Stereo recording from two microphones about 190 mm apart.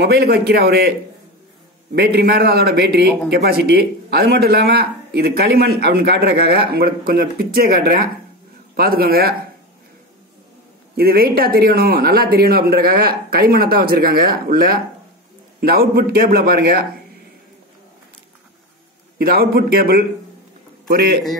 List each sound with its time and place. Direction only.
0.0 s speech: 55° right (ahead or behind)
2.0 s speech: 55° right (ahead or behind)
11.0 s speech: 55° right (ahead or behind)
19.1 s a man's voice: 50° right (ahead or behind)